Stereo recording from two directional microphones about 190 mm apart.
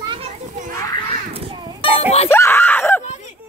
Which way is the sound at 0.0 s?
25° right (ahead or behind).